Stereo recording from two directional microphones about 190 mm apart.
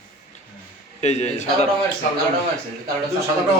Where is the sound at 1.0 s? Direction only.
35° left (ahead or behind).